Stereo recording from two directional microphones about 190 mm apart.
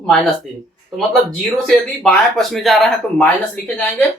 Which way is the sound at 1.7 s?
Centre (ahead or behind).